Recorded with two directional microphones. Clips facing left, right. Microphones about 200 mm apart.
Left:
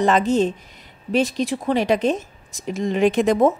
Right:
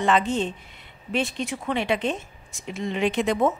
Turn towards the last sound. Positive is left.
turn(degrees=45)  # may be behind; listen again after turning